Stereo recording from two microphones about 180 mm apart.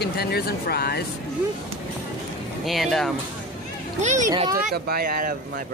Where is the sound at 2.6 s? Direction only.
Centre (ahead or behind).